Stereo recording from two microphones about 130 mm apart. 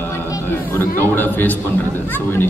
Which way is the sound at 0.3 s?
15° left (ahead or behind).